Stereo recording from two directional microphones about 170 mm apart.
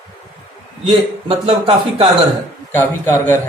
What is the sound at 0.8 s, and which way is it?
A man's voice, 35° right (ahead or behind).